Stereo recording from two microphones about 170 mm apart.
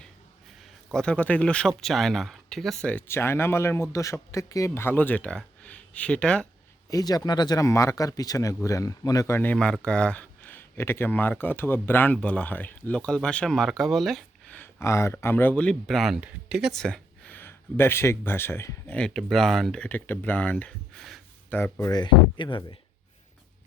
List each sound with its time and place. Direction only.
0.6 s speech: 5° left (ahead or behind)
6.9 s speech: 20° left (ahead or behind); by 16.7 s 5° right (ahead or behind)
16.8 s speech: 5° left (ahead or behind)
21.5 s speech: 15° left (ahead or behind)